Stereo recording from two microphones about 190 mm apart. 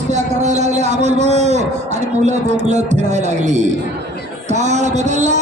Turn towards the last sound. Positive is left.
turn(degrees=-40)  # may be behind; listen again after turning